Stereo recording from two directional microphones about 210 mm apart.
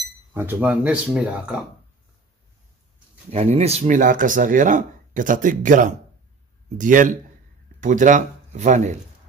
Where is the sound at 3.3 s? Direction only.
30° right (ahead or behind).